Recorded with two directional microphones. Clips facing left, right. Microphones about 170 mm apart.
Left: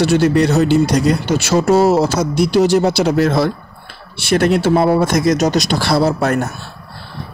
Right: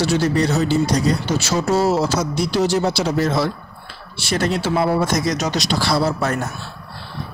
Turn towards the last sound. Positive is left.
turn(degrees=55)  # may be behind; listen again after turning